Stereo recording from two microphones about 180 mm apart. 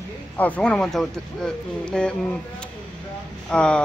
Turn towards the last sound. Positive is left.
turn(degrees=5)  # may be behind; listen again after turning